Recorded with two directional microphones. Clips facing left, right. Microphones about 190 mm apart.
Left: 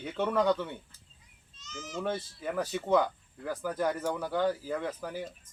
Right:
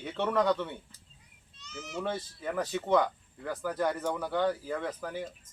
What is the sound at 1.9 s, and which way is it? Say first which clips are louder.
Speech: left 1 dB; 5° left (ahead or behind).